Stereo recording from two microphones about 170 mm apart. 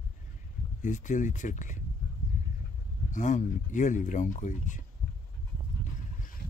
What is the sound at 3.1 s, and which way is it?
Speech, 45° left (ahead or behind).